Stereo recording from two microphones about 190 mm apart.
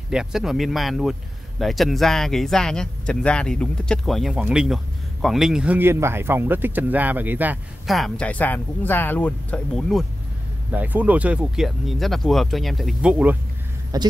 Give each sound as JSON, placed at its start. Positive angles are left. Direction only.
{"t": 0.1, "sound": "speech", "side_deg": -5}
{"t": 13.9, "sound": "speech", "side_deg": -20}